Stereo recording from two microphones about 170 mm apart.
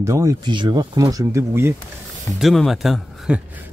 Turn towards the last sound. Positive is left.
turn(degrees=-5)  # may be behind; listen again after turning